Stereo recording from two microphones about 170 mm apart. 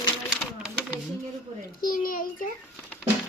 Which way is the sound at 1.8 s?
55° left (ahead or behind).